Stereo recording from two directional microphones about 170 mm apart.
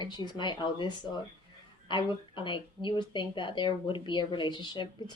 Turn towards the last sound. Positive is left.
turn(degrees=25)  # may be behind; listen again after turning